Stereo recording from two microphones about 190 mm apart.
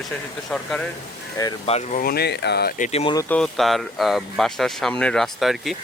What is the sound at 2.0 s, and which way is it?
Speech, 55° left (ahead or behind).